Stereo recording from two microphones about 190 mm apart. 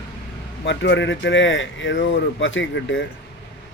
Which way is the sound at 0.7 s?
70° left (ahead or behind).